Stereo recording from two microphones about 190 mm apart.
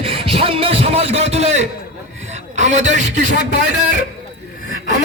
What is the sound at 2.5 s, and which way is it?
Speech, 40° right (ahead or behind).